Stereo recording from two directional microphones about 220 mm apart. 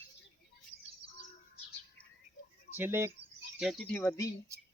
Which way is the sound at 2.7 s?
10° right (ahead or behind).